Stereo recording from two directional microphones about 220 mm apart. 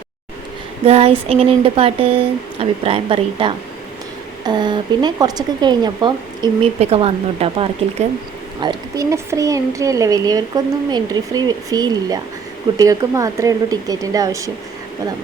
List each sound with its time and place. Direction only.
0.9 s speech: 25° right (ahead or behind)
8.6 s speech: 15° right (ahead or behind)